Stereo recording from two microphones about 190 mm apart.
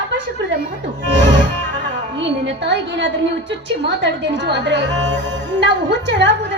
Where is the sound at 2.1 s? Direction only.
70° right (ahead or behind).